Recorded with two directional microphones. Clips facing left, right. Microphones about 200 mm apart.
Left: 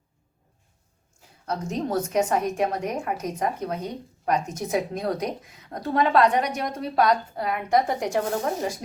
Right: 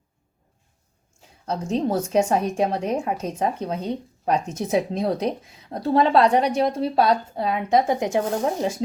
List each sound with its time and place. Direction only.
1.5 s a woman's voice: 30° right (ahead or behind)